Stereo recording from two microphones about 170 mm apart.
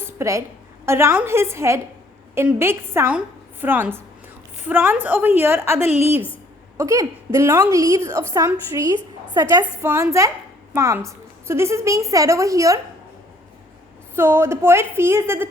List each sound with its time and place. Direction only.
0.0 s a sound: 15° right (ahead or behind)
0.9 s a woman's voice: 15° right (ahead or behind)
5.8 s a woman's voice: 40° left (ahead or behind)
6.7 s a woman's voice: 20° right (ahead or behind)
14.2 s a woman's voice: 15° right (ahead or behind)